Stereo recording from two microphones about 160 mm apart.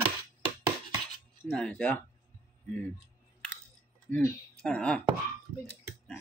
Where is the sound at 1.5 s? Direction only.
5° left (ahead or behind).